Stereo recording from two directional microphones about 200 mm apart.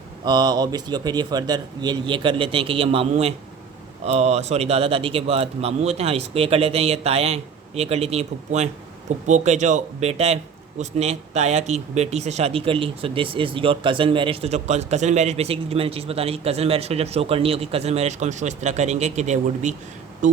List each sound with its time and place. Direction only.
0.3 s speech: 20° right (ahead or behind); by 20.4 s 40° right (ahead or behind)